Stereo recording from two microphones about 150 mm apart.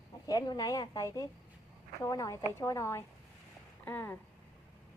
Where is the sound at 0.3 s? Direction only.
25° left (ahead or behind).